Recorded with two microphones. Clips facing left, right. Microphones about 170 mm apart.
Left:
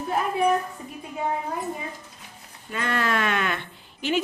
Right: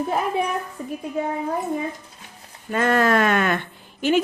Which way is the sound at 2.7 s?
45° right (ahead or behind).